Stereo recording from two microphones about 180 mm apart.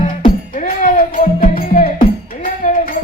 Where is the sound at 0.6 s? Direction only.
50° left (ahead or behind).